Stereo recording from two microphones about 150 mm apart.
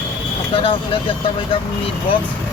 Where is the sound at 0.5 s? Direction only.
35° left (ahead or behind).